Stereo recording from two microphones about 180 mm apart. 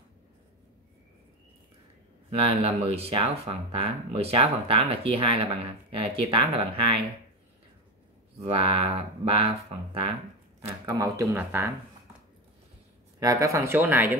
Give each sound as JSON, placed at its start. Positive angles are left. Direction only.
{"t": 2.4, "sound": "speech", "side_deg": -35}
{"t": 8.4, "sound": "speech", "side_deg": -30}
{"t": 10.9, "sound": "speech", "side_deg": -20}
{"t": 13.2, "sound": "speech", "side_deg": -20}